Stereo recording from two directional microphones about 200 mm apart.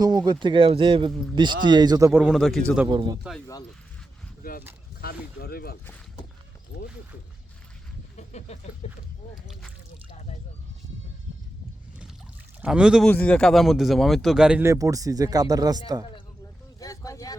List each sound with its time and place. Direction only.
0.0 s a man's voice: 20° right (ahead or behind)
2.2 s speech: centre (ahead or behind)
2.9 s a man's voice: 20° right (ahead or behind)
3.2 s speech: 5° left (ahead or behind)
4.9 s speech: 50° left (ahead or behind)
8.1 s a sound: 35° left (ahead or behind)
9.3 s a sound: centre (ahead or behind)
12.6 s speech: 5° right (ahead or behind)
16.8 s speech: 15° left (ahead or behind)